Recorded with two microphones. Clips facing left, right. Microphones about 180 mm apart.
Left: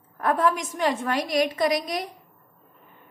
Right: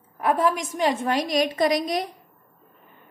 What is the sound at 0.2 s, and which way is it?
A woman's voice, 15° right (ahead or behind).